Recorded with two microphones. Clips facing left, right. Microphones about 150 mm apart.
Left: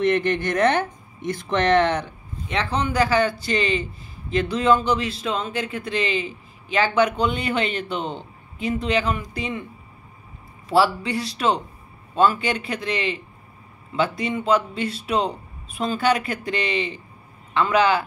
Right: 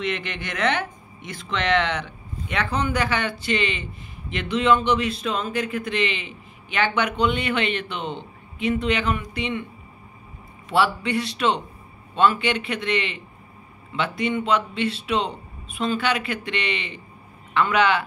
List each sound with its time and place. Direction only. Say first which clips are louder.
0.0 s speech: left 8 dB; 45° left (ahead or behind)
2.4 s speech: left 1 dB; 30° left (ahead or behind)
10.7 s speech: left 2 dB; 35° left (ahead or behind)